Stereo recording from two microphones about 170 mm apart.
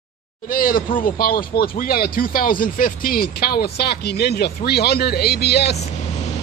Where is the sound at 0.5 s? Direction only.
55° left (ahead or behind).